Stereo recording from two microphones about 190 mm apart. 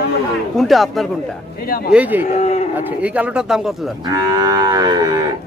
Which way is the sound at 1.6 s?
55° left (ahead or behind).